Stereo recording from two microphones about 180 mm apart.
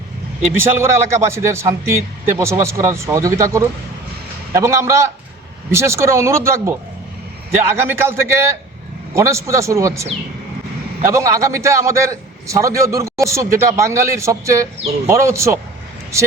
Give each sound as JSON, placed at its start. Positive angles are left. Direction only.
{"t": 0.5, "sound": "a man's voice", "side_deg": -15}